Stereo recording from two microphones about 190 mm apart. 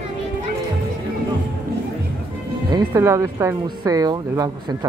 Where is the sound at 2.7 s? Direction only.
15° right (ahead or behind).